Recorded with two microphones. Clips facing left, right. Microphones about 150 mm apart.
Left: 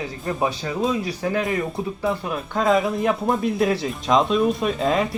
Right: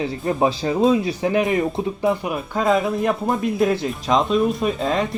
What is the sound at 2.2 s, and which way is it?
Speech, 5° right (ahead or behind).